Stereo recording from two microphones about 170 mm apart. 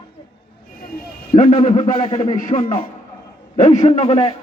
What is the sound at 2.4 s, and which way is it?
A man's voice, 50° left (ahead or behind).